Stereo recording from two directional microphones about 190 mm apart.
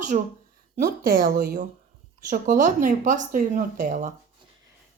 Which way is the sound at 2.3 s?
45° right (ahead or behind).